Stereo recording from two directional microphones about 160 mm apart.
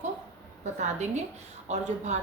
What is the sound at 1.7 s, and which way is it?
Speech, 45° right (ahead or behind).